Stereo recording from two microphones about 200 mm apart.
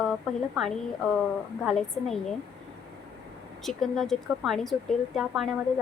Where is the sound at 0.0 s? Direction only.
Centre (ahead or behind).